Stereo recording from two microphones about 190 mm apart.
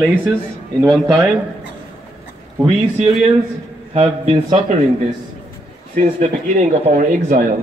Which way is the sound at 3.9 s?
35° right (ahead or behind).